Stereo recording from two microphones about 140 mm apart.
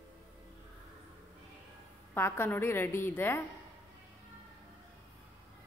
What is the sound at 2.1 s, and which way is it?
A woman's voice, 15° left (ahead or behind).